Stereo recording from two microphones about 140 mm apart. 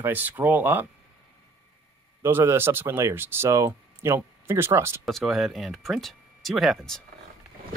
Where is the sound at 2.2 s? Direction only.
15° right (ahead or behind).